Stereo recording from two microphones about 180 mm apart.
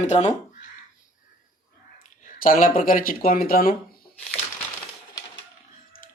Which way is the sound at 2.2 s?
50° left (ahead or behind).